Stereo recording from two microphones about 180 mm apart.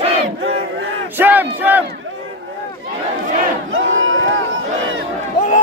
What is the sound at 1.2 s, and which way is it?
Battle cry, 10° right (ahead or behind).